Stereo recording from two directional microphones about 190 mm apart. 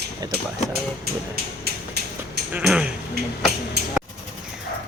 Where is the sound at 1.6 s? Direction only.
60° right (ahead or behind).